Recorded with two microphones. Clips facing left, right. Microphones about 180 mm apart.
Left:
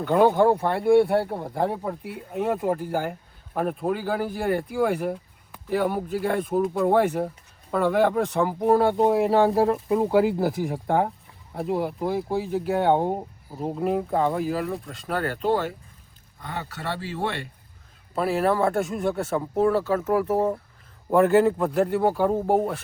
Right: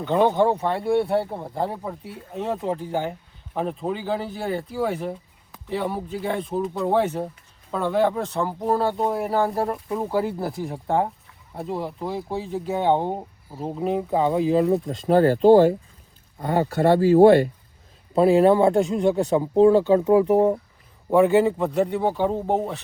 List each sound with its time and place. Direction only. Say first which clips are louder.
0.0 s speech: left 1 dB; 5° left (ahead or behind)
9.7 s speech: left 5 dB; 20° left (ahead or behind)
10.1 s speech: left 3 dB; 5° left (ahead or behind)
14.3 s speech: right 6 dB; 20° right (ahead or behind); by 17.5 s 40° right (ahead or behind)
18.1 s speech: right 7 dB; 30° right (ahead or behind)
21.1 s speech: right 1 dB; centre (ahead or behind)